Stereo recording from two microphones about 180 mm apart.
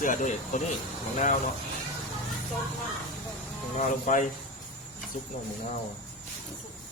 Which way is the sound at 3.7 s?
45° left (ahead or behind).